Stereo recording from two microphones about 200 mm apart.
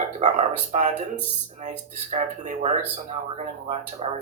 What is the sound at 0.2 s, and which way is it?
Speech, 35° right (ahead or behind).